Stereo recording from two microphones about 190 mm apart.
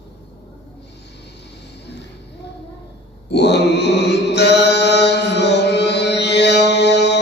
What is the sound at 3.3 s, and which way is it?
Mantra, 65° left (ahead or behind).